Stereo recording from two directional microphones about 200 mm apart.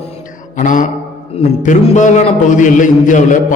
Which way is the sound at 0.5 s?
40° left (ahead or behind).